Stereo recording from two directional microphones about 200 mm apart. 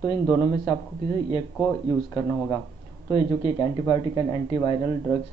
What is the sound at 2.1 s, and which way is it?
Speech, 15° left (ahead or behind).